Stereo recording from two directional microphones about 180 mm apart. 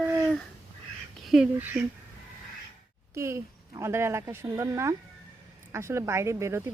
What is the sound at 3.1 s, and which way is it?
Speech, 15° right (ahead or behind).